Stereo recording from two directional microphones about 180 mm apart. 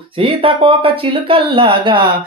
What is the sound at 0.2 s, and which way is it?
Speech, 30° right (ahead or behind).